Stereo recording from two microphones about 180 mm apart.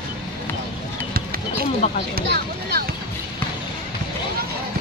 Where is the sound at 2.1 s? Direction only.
60° right (ahead or behind).